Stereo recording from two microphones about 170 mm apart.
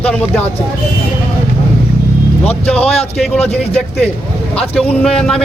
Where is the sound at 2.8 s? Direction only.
35° left (ahead or behind).